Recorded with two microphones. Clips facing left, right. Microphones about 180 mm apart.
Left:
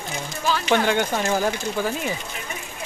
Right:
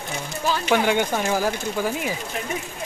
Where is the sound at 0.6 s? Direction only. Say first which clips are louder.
Even; 10° right (ahead or behind).